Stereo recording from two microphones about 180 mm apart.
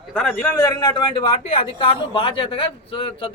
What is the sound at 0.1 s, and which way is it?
Speech, 10° left (ahead or behind).